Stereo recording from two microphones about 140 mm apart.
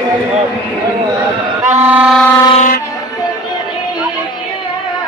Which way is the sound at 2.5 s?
70° left (ahead or behind).